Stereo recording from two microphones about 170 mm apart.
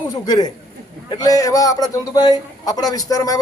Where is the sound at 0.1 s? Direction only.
25° left (ahead or behind).